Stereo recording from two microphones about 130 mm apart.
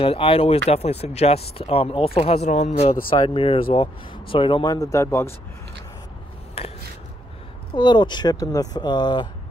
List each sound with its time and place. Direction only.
0.0 s speech: 45° left (ahead or behind)
3.1 s speech: 45° left (ahead or behind)
4.9 s speech: 20° left (ahead or behind)
6.6 s a sound: 50° left (ahead or behind)
7.7 s speech: 35° left (ahead or behind)